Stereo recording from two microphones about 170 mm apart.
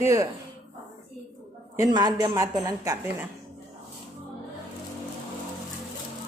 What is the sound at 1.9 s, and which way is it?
A woman's voice, 25° right (ahead or behind).